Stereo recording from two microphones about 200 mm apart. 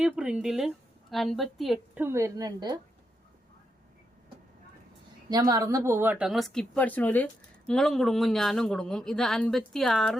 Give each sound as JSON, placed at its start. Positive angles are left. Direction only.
{"t": 0.0, "sound": "speech", "side_deg": -5}
{"t": 2.0, "sound": "a woman's voice", "side_deg": -15}
{"t": 5.3, "sound": "speech", "side_deg": -20}